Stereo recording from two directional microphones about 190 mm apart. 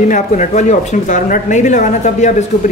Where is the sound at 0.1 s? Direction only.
40° left (ahead or behind).